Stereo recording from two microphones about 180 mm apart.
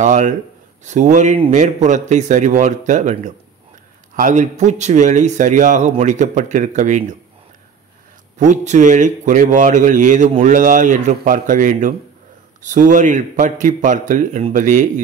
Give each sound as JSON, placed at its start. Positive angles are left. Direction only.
{"t": 0.0, "sound": "speech", "side_deg": -40}
{"t": 8.4, "sound": "speech", "side_deg": -40}